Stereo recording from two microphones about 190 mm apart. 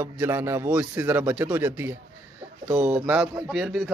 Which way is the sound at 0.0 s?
10° right (ahead or behind).